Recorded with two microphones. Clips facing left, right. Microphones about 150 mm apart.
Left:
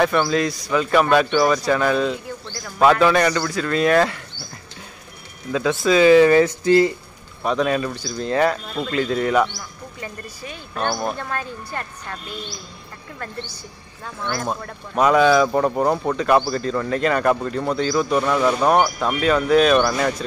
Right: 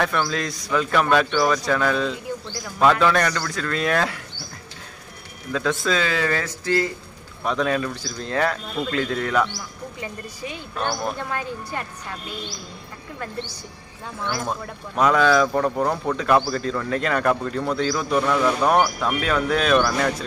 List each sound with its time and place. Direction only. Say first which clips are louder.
0.0 s speech: left 5 dB; 5° left (ahead or behind)
5.5 s speech: left 4 dB; 5° left (ahead or behind)
7.4 s speech: left 2 dB; 5° left (ahead or behind)
9.9 s a woman's voice: left 2 dB; 15° right (ahead or behind)
10.7 s speech: left 3 dB; 5° left (ahead or behind)
11.1 s a woman's voice: even; 10° right (ahead or behind)
14.2 s a woman's voice: left 2 dB; 5° right (ahead or behind)
14.5 s speech: left 2 dB; 5° left (ahead or behind)
16.2 s speech: left 2 dB; centre (ahead or behind)